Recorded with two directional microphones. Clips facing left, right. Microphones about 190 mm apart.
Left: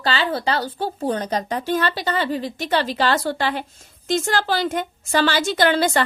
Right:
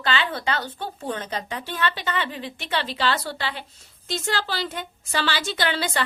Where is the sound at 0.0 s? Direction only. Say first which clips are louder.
Left 4 dB; 35° left (ahead or behind).